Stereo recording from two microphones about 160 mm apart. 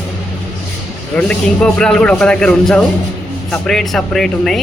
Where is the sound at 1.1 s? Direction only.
5° left (ahead or behind).